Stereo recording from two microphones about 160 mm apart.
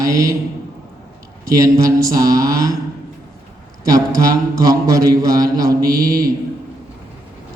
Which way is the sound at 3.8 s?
20° right (ahead or behind).